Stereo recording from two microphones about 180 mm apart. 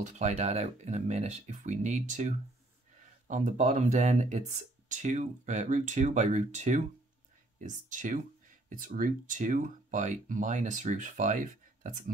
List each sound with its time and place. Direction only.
0.0 s speech: 40° right (ahead or behind)
7.9 s speech: 45° right (ahead or behind)